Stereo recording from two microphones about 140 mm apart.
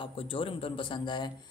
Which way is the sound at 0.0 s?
40° left (ahead or behind).